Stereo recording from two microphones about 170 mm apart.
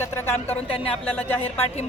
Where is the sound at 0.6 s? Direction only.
35° left (ahead or behind).